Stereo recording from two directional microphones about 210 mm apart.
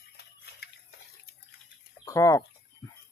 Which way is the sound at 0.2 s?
50° left (ahead or behind).